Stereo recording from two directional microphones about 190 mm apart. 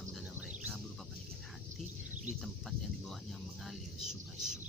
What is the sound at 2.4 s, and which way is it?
Speech, centre (ahead or behind).